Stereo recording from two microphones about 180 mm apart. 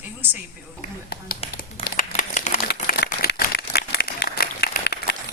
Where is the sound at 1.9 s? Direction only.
45° left (ahead or behind).